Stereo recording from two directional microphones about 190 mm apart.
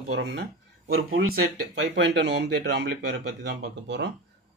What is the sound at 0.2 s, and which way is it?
Speech, 65° right (ahead or behind).